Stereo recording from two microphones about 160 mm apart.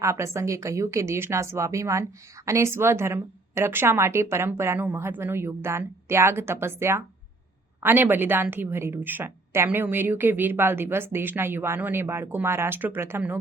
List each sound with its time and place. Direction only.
0.0 s a woman's voice: 20° right (ahead or behind)